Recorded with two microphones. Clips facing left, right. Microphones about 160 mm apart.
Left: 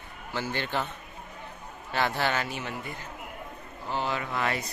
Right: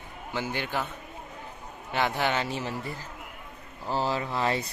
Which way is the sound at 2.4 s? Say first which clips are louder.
Right 3 dB; 30° right (ahead or behind).